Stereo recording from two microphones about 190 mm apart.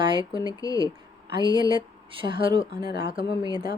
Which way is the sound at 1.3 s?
25° right (ahead or behind).